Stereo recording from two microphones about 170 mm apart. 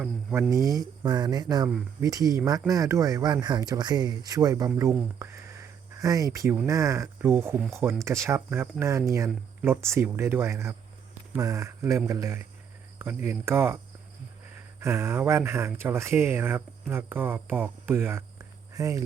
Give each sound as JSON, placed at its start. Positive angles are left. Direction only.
{"t": 0.0, "sound": "speech", "side_deg": -5}
{"t": 0.5, "sound": "speech", "side_deg": -20}
{"t": 4.9, "sound": "a sound", "side_deg": -15}
{"t": 6.7, "sound": "speech", "side_deg": -20}
{"t": 14.8, "sound": "speech", "side_deg": -15}